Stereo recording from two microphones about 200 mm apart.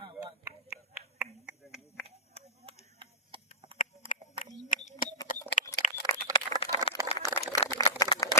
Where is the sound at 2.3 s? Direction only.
30° right (ahead or behind).